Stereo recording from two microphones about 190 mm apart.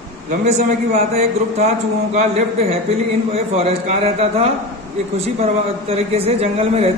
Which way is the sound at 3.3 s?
30° right (ahead or behind).